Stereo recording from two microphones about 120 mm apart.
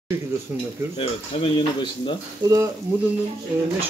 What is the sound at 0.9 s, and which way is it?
Speech, 45° left (ahead or behind).